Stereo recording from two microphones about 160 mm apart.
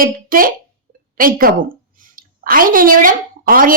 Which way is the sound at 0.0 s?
60° right (ahead or behind).